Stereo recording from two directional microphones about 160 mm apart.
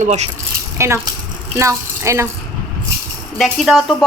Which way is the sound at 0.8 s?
15° right (ahead or behind).